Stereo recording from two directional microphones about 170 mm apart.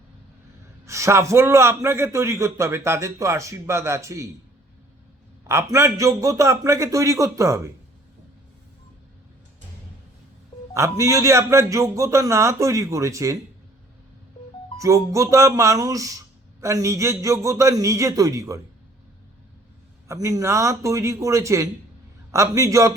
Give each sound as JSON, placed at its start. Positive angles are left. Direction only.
{"t": 0.9, "sound": "a man's voice", "side_deg": -15}
{"t": 5.5, "sound": "a man's voice", "side_deg": -15}
{"t": 10.8, "sound": "a man's voice", "side_deg": -20}
{"t": 14.8, "sound": "speech", "side_deg": -20}
{"t": 20.1, "sound": "a man's voice", "side_deg": -20}